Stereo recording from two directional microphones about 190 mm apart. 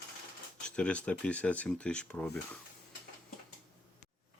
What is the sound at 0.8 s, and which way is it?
Speech, 5° left (ahead or behind).